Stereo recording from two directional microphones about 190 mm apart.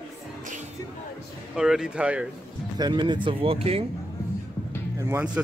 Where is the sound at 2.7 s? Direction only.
25° right (ahead or behind).